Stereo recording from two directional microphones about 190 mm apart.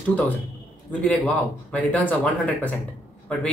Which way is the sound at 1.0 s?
5° left (ahead or behind).